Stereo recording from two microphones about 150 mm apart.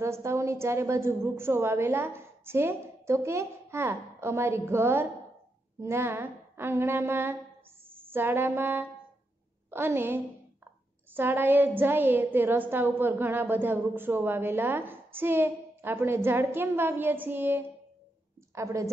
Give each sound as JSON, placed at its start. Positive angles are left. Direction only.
{"t": 0.0, "sound": "a woman's voice", "side_deg": -20}
{"t": 7.9, "sound": "music", "side_deg": -15}
{"t": 9.7, "sound": "a woman's voice", "side_deg": -15}